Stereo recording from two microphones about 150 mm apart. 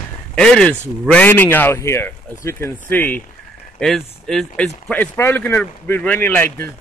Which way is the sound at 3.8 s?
Centre (ahead or behind).